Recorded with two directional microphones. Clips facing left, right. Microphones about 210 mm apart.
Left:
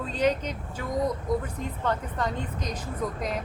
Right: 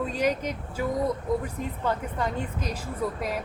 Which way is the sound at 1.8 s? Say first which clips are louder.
Even; 10° right (ahead or behind).